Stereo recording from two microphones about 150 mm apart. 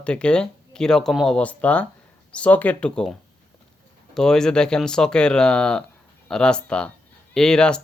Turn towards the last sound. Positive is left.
turn(degrees=5)  # may be behind; listen again after turning